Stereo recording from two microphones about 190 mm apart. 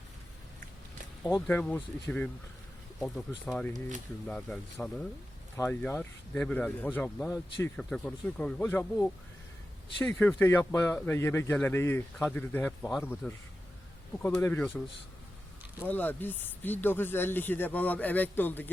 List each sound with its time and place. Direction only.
1.3 s a man's voice: 10° left (ahead or behind)
3.7 s speech: 40° right (ahead or behind)
4.3 s speech: 5° left (ahead or behind)
5.5 s a man's voice: 15° left (ahead or behind)
15.8 s a man's voice: 10° left (ahead or behind)